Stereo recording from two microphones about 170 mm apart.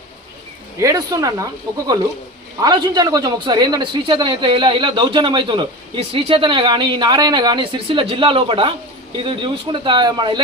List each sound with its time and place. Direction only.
0.8 s a man's voice: 20° right (ahead or behind)
2.6 s a man's voice: 25° right (ahead or behind)